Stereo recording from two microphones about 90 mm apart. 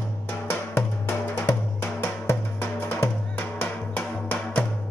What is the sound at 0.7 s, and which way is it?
Music, 25° left (ahead or behind).